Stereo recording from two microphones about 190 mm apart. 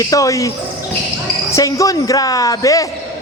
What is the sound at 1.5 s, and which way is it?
A woman's voice, 15° left (ahead or behind).